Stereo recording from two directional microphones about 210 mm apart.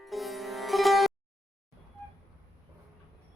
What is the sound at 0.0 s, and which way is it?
Sitar, centre (ahead or behind).